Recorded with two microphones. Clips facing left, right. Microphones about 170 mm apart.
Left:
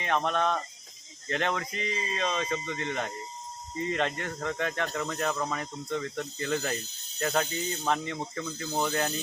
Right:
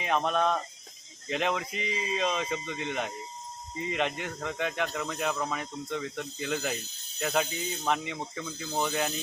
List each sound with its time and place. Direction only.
0.0 s speech: 10° right (ahead or behind)